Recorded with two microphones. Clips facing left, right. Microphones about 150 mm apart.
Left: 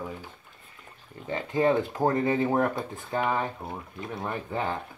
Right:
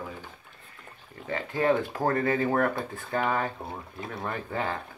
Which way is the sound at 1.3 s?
20° left (ahead or behind).